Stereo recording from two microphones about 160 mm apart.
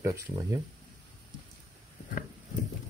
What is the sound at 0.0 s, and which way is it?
Speech, 20° right (ahead or behind).